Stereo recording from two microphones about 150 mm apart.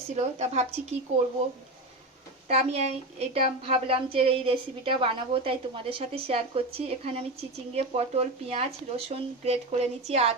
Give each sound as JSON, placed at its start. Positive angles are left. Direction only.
{"t": 0.2, "sound": "speech", "side_deg": -50}
{"t": 2.5, "sound": "a woman's voice", "side_deg": -45}